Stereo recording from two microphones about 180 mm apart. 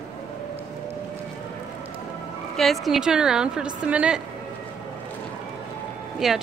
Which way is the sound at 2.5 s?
Centre (ahead or behind).